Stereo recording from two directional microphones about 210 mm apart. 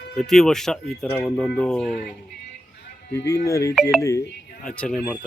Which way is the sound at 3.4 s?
15° left (ahead or behind).